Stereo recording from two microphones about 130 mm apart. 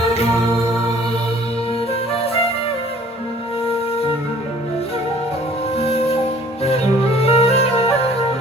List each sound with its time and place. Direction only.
5.7 s music: 50° left (ahead or behind)
7.2 s music: 50° left (ahead or behind)